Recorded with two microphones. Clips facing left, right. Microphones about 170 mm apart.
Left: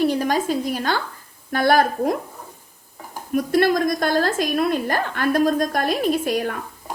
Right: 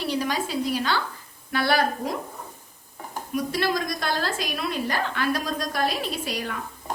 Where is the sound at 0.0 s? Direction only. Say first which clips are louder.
Left 7 dB; 50° left (ahead or behind).